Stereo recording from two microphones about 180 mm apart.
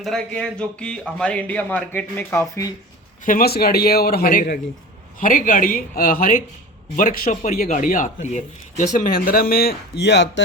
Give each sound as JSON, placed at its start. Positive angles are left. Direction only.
{"t": 0.0, "sound": "speech", "side_deg": 5}
{"t": 3.2, "sound": "a man's voice", "side_deg": 55}